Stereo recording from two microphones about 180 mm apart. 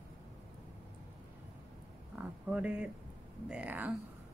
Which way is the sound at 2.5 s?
5° right (ahead or behind).